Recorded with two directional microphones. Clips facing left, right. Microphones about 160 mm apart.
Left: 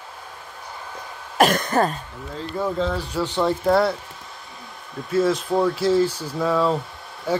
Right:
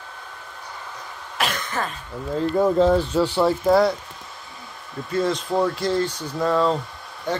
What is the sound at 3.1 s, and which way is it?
Speech, 10° right (ahead or behind).